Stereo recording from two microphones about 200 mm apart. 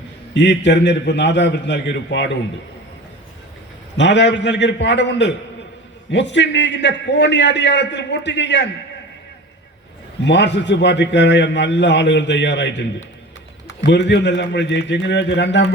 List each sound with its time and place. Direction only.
0.3 s a man's voice: 60° left (ahead or behind)
3.9 s a man's voice: 60° left (ahead or behind)
10.2 s a man's voice: 60° left (ahead or behind)
13.8 s a man's voice: 60° left (ahead or behind)